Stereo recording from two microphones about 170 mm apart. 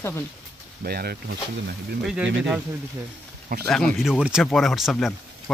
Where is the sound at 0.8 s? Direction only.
65° right (ahead or behind).